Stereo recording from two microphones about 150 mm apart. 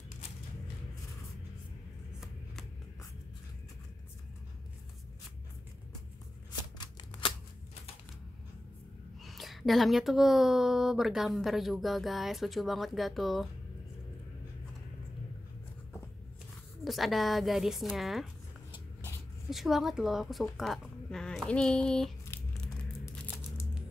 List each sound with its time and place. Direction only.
6.8 s shuffling cards: 30° left (ahead or behind)
9.2 s a woman's voice: centre (ahead or behind)
16.8 s a woman's voice: centre (ahead or behind)
19.5 s a woman's voice: centre (ahead or behind)